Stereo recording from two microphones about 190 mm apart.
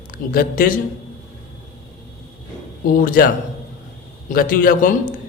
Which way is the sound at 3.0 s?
45° left (ahead or behind).